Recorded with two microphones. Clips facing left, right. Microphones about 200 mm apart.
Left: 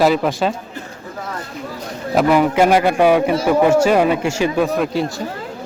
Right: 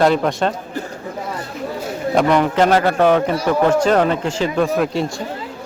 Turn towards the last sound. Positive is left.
turn(degrees=0)  # may be behind; listen again after turning